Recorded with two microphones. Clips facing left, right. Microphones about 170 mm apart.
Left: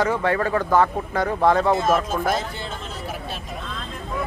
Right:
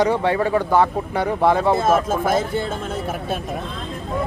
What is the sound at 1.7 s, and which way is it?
Speech, 30° right (ahead or behind).